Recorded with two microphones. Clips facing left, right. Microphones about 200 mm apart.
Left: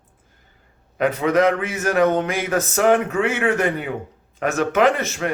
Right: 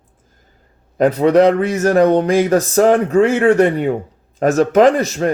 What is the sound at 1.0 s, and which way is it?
Speech, 35° right (ahead or behind).